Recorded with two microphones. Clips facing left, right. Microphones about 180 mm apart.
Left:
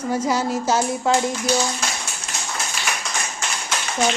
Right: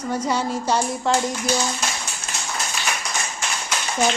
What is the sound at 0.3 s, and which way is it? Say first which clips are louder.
Child singing: left 1 dB; 5° left (ahead or behind).